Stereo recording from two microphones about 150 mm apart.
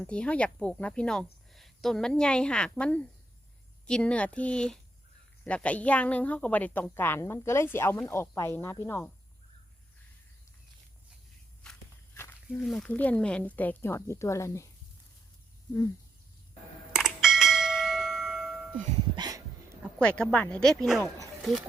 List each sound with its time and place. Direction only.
0.0 s speech: 5° left (ahead or behind)
11.6 s walk: 5° left (ahead or behind)
12.1 s a sound: 15° left (ahead or behind)
12.5 s speech: centre (ahead or behind); by 14.7 s 20° left (ahead or behind)
16.9 s bell: 5° right (ahead or behind)
19.1 s a sound: 25° right (ahead or behind)
20.0 s speech: 5° left (ahead or behind)